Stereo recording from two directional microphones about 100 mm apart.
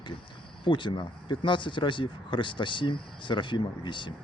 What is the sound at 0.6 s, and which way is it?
Speech, 50° left (ahead or behind).